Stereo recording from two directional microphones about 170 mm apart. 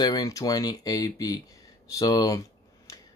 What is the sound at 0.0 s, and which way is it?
Speech, 20° left (ahead or behind).